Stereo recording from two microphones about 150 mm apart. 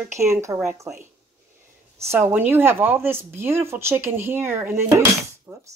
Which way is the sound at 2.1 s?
15° right (ahead or behind).